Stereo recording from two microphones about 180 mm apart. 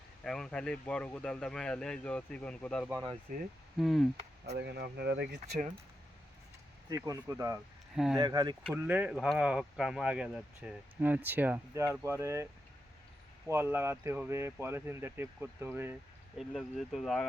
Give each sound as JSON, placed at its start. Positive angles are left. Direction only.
{"t": 0.2, "sound": "speech", "side_deg": 5}
{"t": 3.3, "sound": "speech", "side_deg": -45}
{"t": 3.8, "sound": "speech", "side_deg": 0}
{"t": 4.5, "sound": "speech", "side_deg": -65}
{"t": 6.9, "sound": "speech", "side_deg": -20}
{"t": 7.9, "sound": "speech", "side_deg": -5}
{"t": 8.2, "sound": "speech", "side_deg": -20}
{"t": 8.7, "sound": "speech", "side_deg": -10}
{"t": 13.5, "sound": "speech", "side_deg": -10}
{"t": 16.4, "sound": "speech", "side_deg": 0}